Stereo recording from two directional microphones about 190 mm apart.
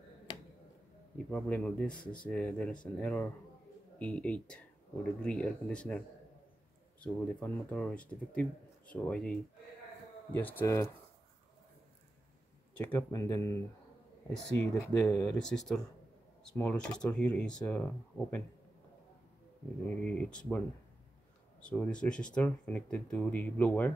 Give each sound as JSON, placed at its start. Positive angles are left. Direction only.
{"t": 1.1, "sound": "speech", "side_deg": 5}
{"t": 12.7, "sound": "speech", "side_deg": 5}
{"t": 14.3, "sound": "speech", "side_deg": 5}
{"t": 14.9, "sound": "speech", "side_deg": 15}
{"t": 15.2, "sound": "speech", "side_deg": 5}
{"t": 20.0, "sound": "speech", "side_deg": 5}
{"t": 21.5, "sound": "speech", "side_deg": 5}